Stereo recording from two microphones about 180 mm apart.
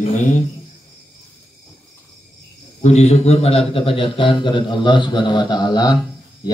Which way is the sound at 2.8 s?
40° left (ahead or behind).